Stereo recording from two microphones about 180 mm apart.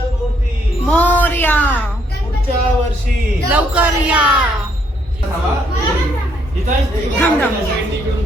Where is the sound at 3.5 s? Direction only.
10° right (ahead or behind).